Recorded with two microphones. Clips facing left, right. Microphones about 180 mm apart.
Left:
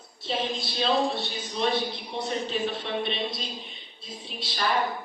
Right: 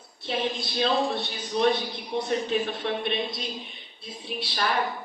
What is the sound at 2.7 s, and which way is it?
Speech, 55° right (ahead or behind).